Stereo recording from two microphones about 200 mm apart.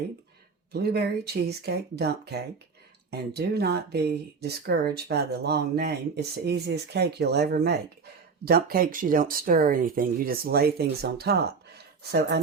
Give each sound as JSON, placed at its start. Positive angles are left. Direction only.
{"t": 0.7, "sound": "speech", "side_deg": -55}